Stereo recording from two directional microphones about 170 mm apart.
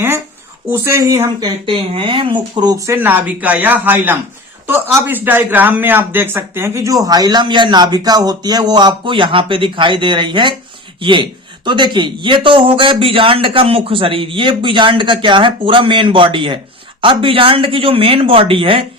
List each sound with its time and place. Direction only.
0.7 s speech: 15° right (ahead or behind); by 18.9 s 30° right (ahead or behind)